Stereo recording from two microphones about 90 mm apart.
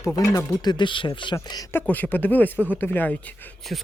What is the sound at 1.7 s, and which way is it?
Speech, 20° left (ahead or behind).